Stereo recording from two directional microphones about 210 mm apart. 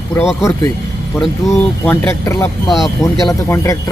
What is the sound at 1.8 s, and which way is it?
A man's voice, 10° left (ahead or behind).